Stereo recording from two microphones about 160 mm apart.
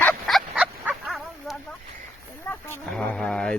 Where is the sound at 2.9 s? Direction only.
5° left (ahead or behind).